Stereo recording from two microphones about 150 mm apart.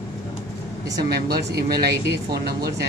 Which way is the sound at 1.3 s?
90° right.